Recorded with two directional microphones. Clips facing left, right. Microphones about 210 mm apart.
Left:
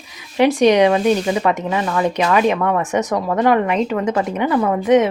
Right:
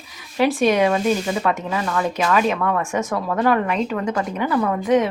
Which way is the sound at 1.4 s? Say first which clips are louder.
Left 3 dB; 15° left (ahead or behind).